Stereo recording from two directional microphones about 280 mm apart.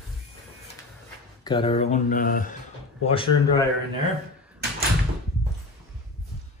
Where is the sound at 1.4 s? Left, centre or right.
Centre.